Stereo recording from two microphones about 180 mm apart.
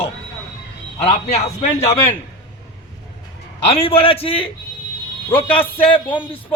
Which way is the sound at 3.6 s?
30° left (ahead or behind).